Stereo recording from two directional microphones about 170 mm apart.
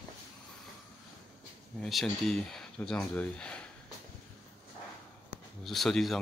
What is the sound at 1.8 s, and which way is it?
Speech, centre (ahead or behind).